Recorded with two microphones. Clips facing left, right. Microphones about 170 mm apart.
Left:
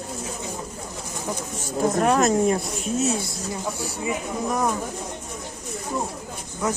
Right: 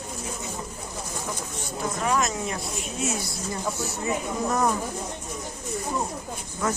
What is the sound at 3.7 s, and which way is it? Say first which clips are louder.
Speech: even; 10° left (ahead or behind).